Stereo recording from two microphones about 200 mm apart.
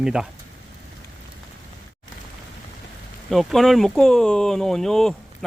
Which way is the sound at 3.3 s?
Centre (ahead or behind).